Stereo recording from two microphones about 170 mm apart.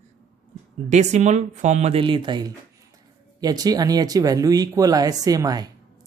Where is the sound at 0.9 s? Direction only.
45° right (ahead or behind); by 5.7 s 20° right (ahead or behind).